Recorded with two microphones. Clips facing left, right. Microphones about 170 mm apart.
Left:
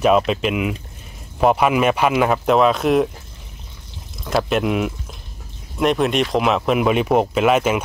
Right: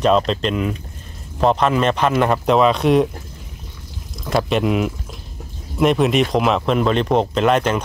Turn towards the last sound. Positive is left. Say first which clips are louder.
# even
turn(degrees=5)  # may be behind; listen again after turning